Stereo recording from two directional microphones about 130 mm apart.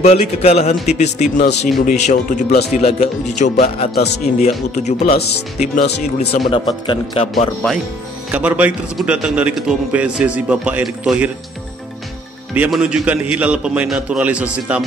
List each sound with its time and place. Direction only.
0.0 s speech: 55° left (ahead or behind)
2.8 s a man's voice: 50° left (ahead or behind)
8.3 s speech: 10° right (ahead or behind)
12.5 s speech: 10° right (ahead or behind)